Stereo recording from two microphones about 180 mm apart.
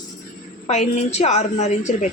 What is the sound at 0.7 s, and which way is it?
Speech, 40° left (ahead or behind).